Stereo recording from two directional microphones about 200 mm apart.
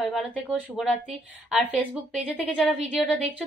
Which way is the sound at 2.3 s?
5° left (ahead or behind).